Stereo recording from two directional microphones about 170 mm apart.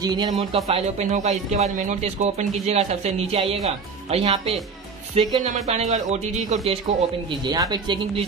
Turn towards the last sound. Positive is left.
turn(degrees=-25)  # may be behind; listen again after turning